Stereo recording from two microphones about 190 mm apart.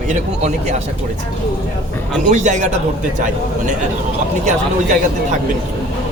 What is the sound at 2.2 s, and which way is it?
Speech, 40° right (ahead or behind).